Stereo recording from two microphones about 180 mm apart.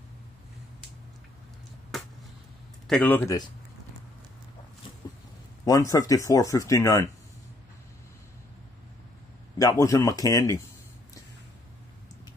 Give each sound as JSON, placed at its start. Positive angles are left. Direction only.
{"t": 2.9, "sound": "speech", "side_deg": 10}
{"t": 5.7, "sound": "speech", "side_deg": 20}
{"t": 9.6, "sound": "speech", "side_deg": 20}